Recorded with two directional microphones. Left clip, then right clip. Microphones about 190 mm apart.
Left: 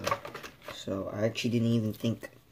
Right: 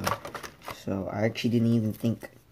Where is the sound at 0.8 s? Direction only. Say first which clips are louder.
Right 2 dB; 5° right (ahead or behind).